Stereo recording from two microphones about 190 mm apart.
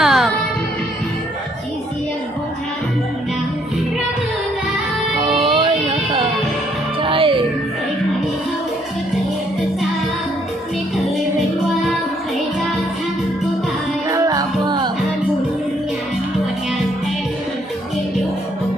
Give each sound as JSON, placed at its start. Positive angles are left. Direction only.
{"t": 0.0, "sound": "music", "side_deg": 0}
{"t": 5.2, "sound": "music", "side_deg": -25}
{"t": 7.0, "sound": "music", "side_deg": -25}
{"t": 14.1, "sound": "music", "side_deg": -20}